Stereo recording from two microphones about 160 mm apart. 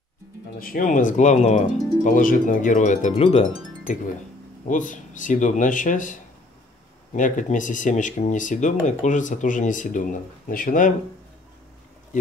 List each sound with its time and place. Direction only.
0.6 s speech: 60° left (ahead or behind)
7.2 s speech: 55° left (ahead or behind)